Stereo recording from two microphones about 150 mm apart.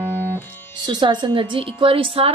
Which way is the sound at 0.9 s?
30° right (ahead or behind).